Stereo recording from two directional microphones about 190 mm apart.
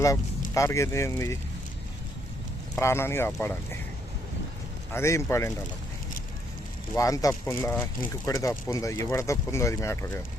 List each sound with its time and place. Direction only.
0.5 s speech: 15° left (ahead or behind)
2.8 s speech: 15° left (ahead or behind)
4.9 s speech: 15° left (ahead or behind)
6.9 s speech: 15° left (ahead or behind)